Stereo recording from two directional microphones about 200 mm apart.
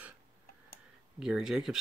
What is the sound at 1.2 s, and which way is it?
Speech, 5° right (ahead or behind).